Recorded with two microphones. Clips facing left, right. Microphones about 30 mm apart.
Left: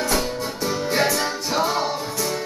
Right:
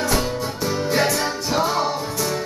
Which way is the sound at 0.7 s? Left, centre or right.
Centre.